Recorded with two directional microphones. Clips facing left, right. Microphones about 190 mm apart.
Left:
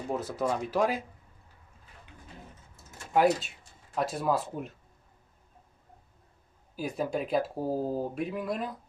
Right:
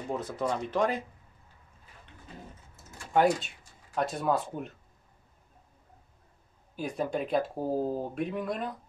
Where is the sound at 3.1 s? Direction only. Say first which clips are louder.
Even; 5° left (ahead or behind).